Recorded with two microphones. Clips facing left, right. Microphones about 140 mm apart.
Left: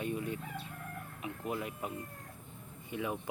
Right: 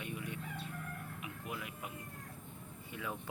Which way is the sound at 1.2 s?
35° left (ahead or behind).